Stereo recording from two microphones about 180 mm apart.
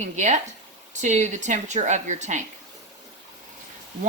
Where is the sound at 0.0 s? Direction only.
40° right (ahead or behind).